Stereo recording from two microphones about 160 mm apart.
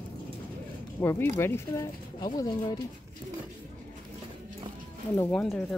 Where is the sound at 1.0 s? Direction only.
15° left (ahead or behind).